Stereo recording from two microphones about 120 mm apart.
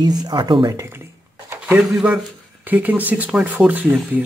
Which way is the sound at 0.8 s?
20° right (ahead or behind).